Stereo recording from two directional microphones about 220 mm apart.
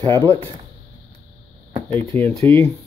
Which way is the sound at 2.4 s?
10° left (ahead or behind).